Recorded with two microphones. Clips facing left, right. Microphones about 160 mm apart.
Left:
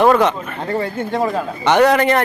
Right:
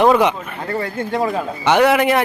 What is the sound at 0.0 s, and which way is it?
A man's voice, 10° right (ahead or behind).